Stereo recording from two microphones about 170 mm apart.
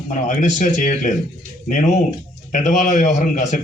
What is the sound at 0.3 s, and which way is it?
Speech, 45° left (ahead or behind).